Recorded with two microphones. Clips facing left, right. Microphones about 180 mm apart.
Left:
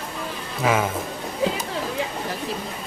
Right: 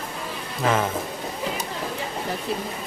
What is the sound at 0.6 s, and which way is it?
Speech, 5° left (ahead or behind).